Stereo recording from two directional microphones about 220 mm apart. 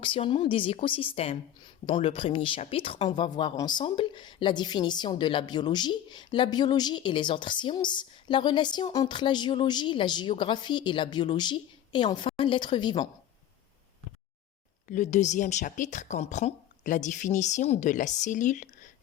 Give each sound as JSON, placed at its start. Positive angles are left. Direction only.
{"t": 0.0, "sound": "a woman's voice", "side_deg": 25}
{"t": 14.8, "sound": "a woman's voice", "side_deg": 35}